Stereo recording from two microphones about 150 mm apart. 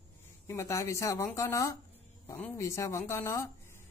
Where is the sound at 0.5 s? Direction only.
20° left (ahead or behind).